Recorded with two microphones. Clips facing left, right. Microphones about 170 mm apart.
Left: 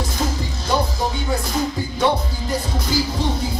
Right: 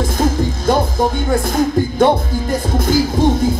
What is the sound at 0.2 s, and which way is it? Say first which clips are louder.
Music: right 8 dB; 50° right (ahead or behind).